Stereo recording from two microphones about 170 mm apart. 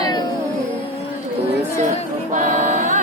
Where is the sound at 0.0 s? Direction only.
25° left (ahead or behind).